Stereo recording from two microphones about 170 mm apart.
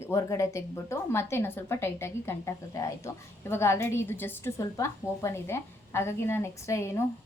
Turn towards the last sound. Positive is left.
turn(degrees=15)  # may be behind; listen again after turning